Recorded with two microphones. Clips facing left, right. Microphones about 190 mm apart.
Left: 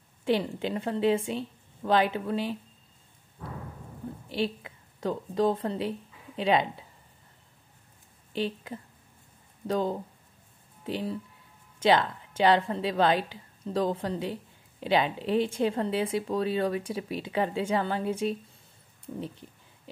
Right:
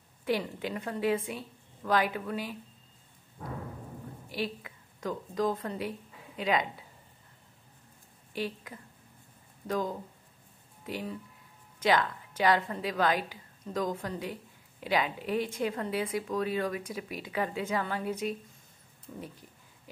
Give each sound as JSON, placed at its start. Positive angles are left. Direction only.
{"t": 0.2, "sound": "a woman's voice", "side_deg": 25}
{"t": 4.3, "sound": "a woman's voice", "side_deg": 30}
{"t": 8.3, "sound": "a woman's voice", "side_deg": 25}